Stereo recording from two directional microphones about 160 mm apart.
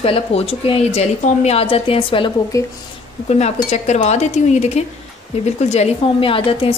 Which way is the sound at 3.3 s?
45° left (ahead or behind).